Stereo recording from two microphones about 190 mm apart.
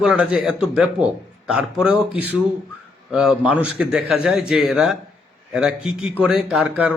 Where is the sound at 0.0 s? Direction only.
5° right (ahead or behind).